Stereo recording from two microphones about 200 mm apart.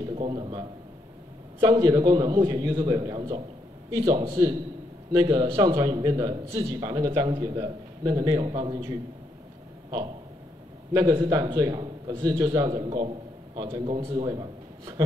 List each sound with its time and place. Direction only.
0.1 s a man's voice: 25° right (ahead or behind)
9.8 s a sound: 25° right (ahead or behind)
10.9 s a man's voice: 20° right (ahead or behind)